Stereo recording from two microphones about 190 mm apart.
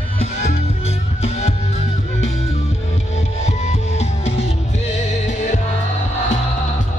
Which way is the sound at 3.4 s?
35° left (ahead or behind).